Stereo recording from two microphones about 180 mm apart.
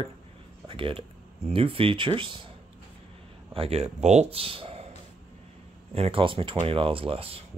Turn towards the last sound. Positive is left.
turn(degrees=-30)  # may be behind; listen again after turning